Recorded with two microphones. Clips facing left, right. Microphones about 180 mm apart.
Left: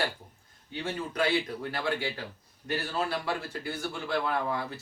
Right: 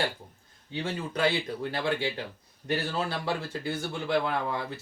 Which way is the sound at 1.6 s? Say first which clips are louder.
Right 2 dB; 25° right (ahead or behind).